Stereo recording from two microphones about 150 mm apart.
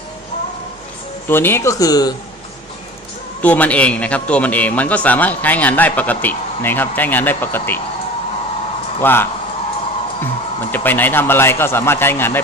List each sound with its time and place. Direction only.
1.3 s speech: 15° left (ahead or behind)
3.4 s a man's voice: 10° left (ahead or behind)
9.0 s a man's voice: 15° left (ahead or behind)
10.7 s a man's voice: 15° left (ahead or behind)